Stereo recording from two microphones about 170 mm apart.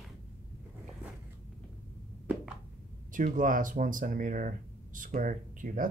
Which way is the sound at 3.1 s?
50° right (ahead or behind).